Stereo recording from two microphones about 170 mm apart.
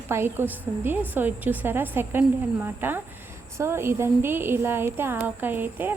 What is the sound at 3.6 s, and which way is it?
Speech, 15° right (ahead or behind).